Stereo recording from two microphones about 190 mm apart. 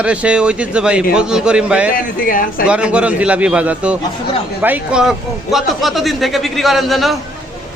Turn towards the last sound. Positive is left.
turn(degrees=0)  # may be behind; listen again after turning